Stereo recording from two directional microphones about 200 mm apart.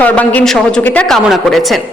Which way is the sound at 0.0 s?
10° left (ahead or behind).